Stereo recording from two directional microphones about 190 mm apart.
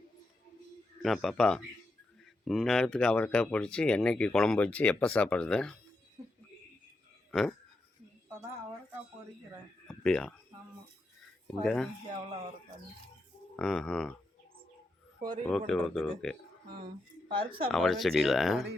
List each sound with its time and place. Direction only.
1.0 s speech: centre (ahead or behind)
7.3 s speech: 5° left (ahead or behind)
9.8 s a sound: 5° left (ahead or behind)
11.6 s speech: 5° left (ahead or behind)
13.6 s speech: centre (ahead or behind)
15.4 s speech: 5° left (ahead or behind)
17.2 s speech: 25° right (ahead or behind)
17.7 s speech: centre (ahead or behind)